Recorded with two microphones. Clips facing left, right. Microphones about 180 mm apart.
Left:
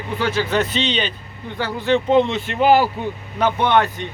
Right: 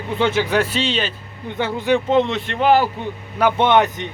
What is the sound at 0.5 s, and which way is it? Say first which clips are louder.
Speech: right 1 dB; 5° right (ahead or behind).